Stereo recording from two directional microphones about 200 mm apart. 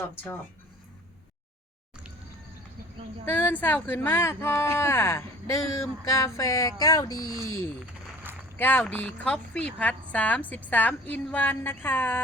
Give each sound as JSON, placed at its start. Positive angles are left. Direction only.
{"t": 3.2, "sound": "speech", "side_deg": 10}
{"t": 8.5, "sound": "speech", "side_deg": 10}